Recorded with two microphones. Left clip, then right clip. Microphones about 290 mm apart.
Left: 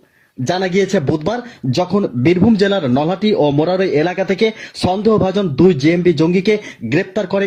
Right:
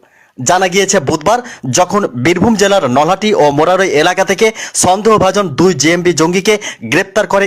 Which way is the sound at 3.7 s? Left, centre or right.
Right.